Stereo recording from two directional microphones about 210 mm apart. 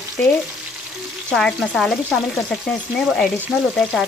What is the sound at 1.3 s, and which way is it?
Frying, centre (ahead or behind).